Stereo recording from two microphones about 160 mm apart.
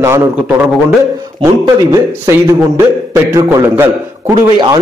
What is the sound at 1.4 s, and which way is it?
A man's voice, 20° right (ahead or behind).